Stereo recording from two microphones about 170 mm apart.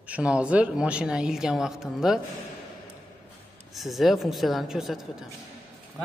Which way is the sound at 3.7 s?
Centre (ahead or behind).